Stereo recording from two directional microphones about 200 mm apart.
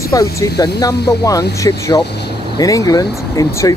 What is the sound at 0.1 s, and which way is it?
Speech, 20° left (ahead or behind).